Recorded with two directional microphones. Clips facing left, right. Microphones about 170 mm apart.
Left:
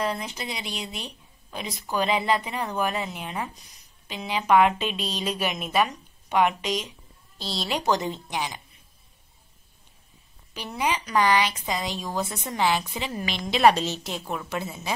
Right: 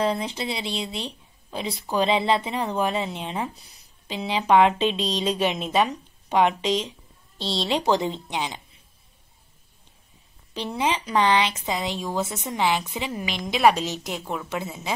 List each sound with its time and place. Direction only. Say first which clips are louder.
0.0 s a woman's voice: right 4 dB; 30° right (ahead or behind)
10.8 s a woman's voice: right 1 dB; 25° right (ahead or behind)